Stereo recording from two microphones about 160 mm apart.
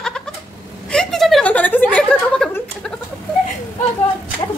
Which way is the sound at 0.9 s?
5° left (ahead or behind).